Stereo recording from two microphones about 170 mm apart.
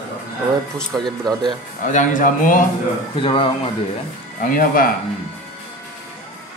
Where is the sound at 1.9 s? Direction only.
50° left (ahead or behind).